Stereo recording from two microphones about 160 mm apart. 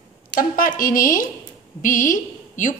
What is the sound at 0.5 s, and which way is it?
A woman's voice, 60° left (ahead or behind).